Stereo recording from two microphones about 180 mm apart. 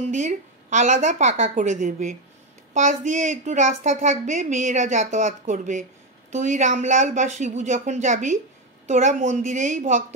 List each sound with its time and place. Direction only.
0.0 s a woman's voice: 40° right (ahead or behind)